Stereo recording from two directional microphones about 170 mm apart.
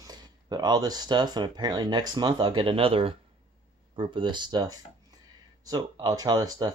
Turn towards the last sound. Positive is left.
turn(degrees=-25)  # may be behind; listen again after turning